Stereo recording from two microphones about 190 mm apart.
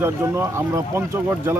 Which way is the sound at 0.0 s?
15° right (ahead or behind).